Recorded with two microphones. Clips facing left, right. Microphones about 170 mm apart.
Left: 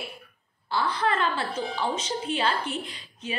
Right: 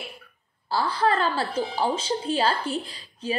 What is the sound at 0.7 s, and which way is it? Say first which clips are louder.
A woman's voice: right 3 dB; 35° right (ahead or behind).